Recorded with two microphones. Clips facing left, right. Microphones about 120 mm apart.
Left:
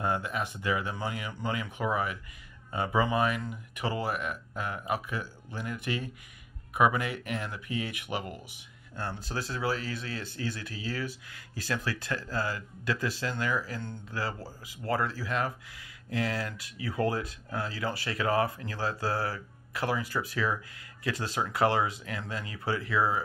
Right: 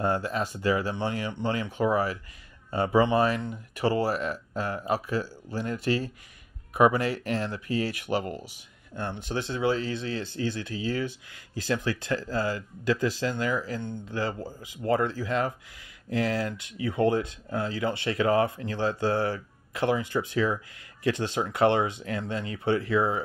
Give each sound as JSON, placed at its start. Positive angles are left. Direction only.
{"t": 0.0, "sound": "speech", "side_deg": -30}